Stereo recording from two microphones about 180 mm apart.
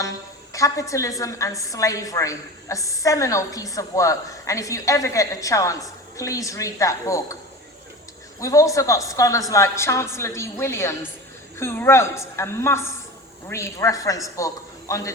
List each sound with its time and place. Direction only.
0.5 s a woman's voice: 20° left (ahead or behind)
8.4 s a woman's voice: 15° left (ahead or behind)